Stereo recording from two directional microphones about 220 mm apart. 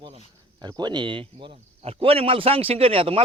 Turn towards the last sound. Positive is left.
turn(degrees=-25)  # may be behind; listen again after turning